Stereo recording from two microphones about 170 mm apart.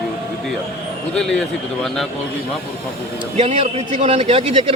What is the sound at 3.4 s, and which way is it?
A man's voice, 40° right (ahead or behind).